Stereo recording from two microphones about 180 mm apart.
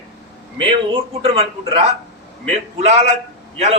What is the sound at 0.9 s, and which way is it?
Speech, 30° right (ahead or behind).